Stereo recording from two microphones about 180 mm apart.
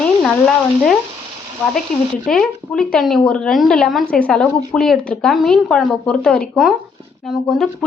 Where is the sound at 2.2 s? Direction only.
5° left (ahead or behind).